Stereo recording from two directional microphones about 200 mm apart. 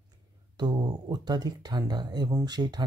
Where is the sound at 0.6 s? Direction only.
20° right (ahead or behind).